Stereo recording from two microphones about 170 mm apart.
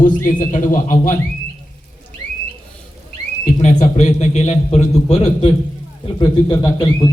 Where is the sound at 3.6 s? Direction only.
45° left (ahead or behind).